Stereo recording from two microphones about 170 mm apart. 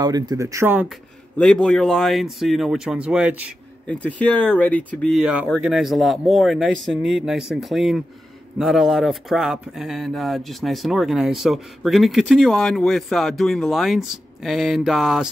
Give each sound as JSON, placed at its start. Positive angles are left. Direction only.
{"t": 0.0, "sound": "speech", "side_deg": -25}
{"t": 1.4, "sound": "speech", "side_deg": 5}
{"t": 3.8, "sound": "speech", "side_deg": 5}
{"t": 5.2, "sound": "speech", "side_deg": -5}